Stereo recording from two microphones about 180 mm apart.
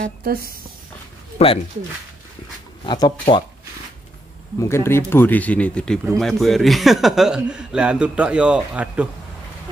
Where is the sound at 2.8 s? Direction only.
25° left (ahead or behind).